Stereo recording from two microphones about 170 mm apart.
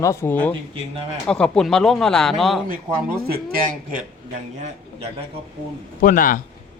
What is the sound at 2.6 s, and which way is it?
Speech, 55° right (ahead or behind).